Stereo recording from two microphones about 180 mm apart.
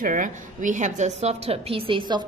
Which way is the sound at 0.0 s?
45° right (ahead or behind).